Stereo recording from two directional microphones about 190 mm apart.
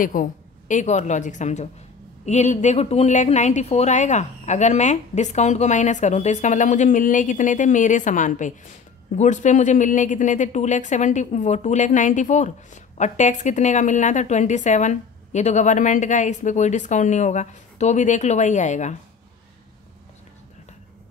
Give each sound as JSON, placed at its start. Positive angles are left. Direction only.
{"t": 0.0, "sound": "speech", "side_deg": 45}